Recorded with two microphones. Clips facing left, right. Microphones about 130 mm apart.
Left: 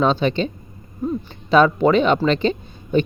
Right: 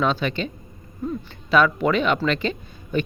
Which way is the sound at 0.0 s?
30° left (ahead or behind).